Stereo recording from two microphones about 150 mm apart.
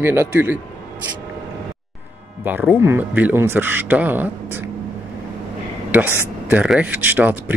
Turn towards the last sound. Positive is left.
turn(degrees=-10)  # may be behind; listen again after turning